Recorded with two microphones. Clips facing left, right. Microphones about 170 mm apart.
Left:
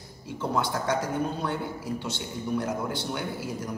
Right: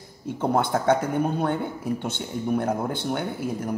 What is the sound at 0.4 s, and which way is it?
A man's voice, 55° right (ahead or behind).